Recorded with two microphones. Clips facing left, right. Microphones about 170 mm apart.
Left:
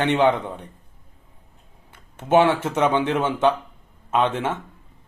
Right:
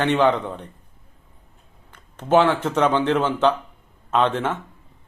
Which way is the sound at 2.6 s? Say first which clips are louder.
Right 1 dB; 10° left (ahead or behind).